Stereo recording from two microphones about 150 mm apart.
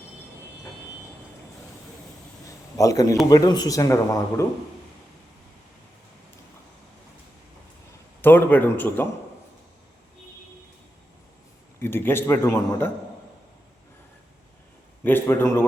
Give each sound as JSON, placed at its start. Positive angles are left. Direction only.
{"t": 2.7, "sound": "speech", "side_deg": 20}
{"t": 8.2, "sound": "a man's voice", "side_deg": 15}
{"t": 11.8, "sound": "a man's voice", "side_deg": 15}
{"t": 15.0, "sound": "a man's voice", "side_deg": 15}